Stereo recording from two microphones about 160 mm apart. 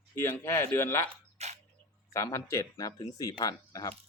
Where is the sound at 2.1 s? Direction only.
20° left (ahead or behind).